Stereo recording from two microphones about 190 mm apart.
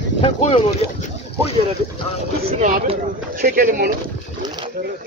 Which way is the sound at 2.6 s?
45° right (ahead or behind).